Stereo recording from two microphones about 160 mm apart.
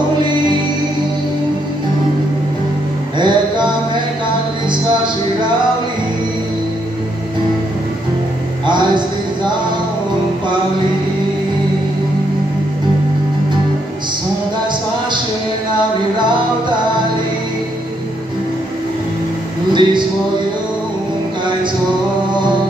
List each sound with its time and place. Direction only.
3.2 s mantra: 30° right (ahead or behind)
8.6 s music: 30° right (ahead or behind)
19.7 s a sound: 30° right (ahead or behind)